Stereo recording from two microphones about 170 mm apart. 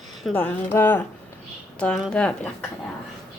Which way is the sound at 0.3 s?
10° left (ahead or behind).